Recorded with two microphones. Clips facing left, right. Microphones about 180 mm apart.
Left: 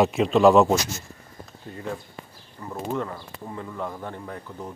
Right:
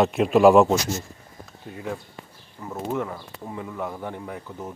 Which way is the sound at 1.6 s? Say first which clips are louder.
Right 1 dB; 5° right (ahead or behind).